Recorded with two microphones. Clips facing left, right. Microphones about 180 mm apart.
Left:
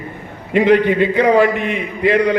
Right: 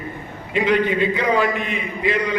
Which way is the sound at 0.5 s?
60° left (ahead or behind).